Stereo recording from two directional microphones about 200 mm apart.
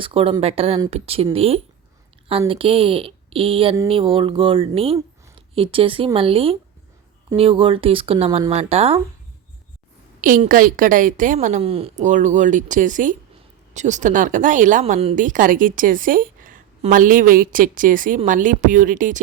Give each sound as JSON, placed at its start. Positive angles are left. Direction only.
{"t": 0.0, "sound": "speech", "side_deg": -30}
{"t": 10.2, "sound": "a woman's voice", "side_deg": -40}